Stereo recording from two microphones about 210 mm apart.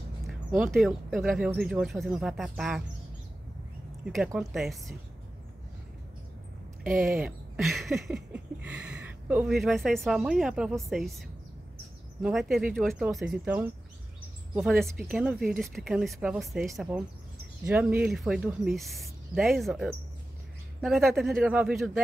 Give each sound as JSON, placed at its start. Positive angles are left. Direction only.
{"t": 0.6, "sound": "speech", "side_deg": 0}
{"t": 4.0, "sound": "speech", "side_deg": 0}
{"t": 6.9, "sound": "speech", "side_deg": -40}
{"t": 7.2, "sound": "speech", "side_deg": 0}
{"t": 12.2, "sound": "speech", "side_deg": 0}